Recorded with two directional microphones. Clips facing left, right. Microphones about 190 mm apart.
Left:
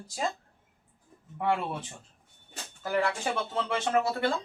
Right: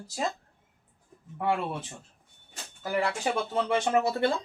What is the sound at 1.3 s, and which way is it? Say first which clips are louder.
Speech: even; centre (ahead or behind).